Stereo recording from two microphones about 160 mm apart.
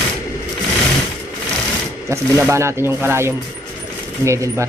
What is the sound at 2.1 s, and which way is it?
Speech, 15° right (ahead or behind).